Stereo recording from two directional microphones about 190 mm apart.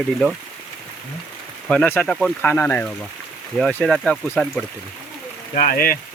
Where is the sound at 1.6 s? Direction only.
5° left (ahead or behind).